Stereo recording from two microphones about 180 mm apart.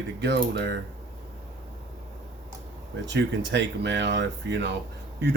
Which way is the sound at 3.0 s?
85° right.